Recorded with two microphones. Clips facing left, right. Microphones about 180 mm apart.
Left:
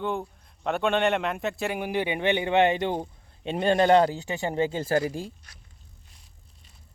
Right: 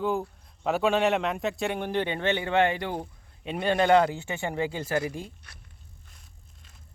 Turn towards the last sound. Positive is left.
turn(degrees=30)  # may be behind; listen again after turning